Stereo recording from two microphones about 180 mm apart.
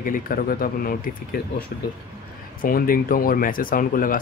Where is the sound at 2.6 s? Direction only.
55° left (ahead or behind).